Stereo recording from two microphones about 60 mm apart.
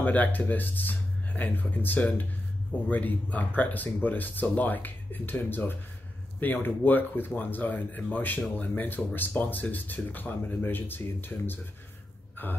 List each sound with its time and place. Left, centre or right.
0.0 s speech: left